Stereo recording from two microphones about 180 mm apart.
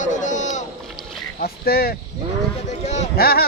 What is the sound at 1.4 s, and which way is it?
Speech, 60° left (ahead or behind).